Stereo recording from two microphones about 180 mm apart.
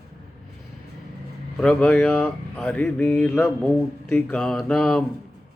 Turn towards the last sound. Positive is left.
turn(degrees=5)  # may be behind; listen again after turning